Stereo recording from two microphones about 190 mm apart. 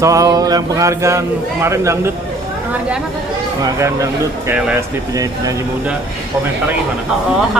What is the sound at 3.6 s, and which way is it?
A woman's voice, 15° right (ahead or behind).